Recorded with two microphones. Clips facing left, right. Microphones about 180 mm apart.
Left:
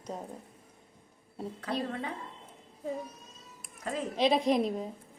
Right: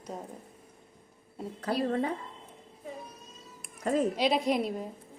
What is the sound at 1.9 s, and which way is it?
Speech, 40° right (ahead or behind).